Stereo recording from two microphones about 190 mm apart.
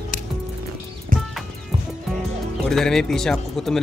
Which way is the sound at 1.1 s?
45° right (ahead or behind).